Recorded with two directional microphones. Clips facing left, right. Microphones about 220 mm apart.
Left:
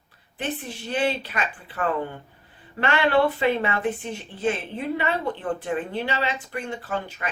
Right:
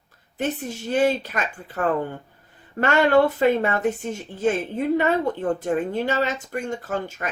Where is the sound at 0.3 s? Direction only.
45° right (ahead or behind).